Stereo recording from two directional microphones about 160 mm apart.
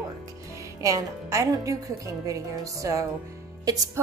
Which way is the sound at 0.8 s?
20° right (ahead or behind).